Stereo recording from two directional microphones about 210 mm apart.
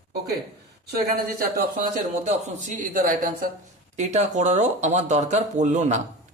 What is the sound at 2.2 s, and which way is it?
A man's voice, 35° right (ahead or behind).